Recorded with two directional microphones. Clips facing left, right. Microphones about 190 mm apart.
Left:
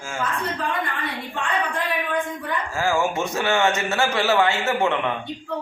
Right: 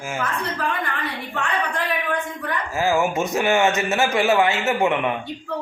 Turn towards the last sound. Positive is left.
turn(degrees=-15)  # may be behind; listen again after turning